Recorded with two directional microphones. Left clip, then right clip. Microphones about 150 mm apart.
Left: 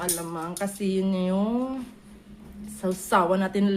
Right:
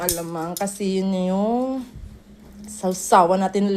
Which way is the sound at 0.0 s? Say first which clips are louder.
Right 5 dB; 30° right (ahead or behind).